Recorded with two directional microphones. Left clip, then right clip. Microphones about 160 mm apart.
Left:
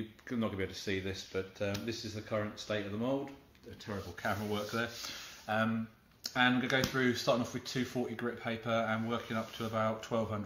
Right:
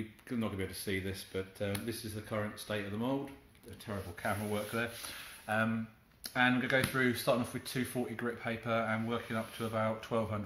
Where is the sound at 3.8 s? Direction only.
5° right (ahead or behind).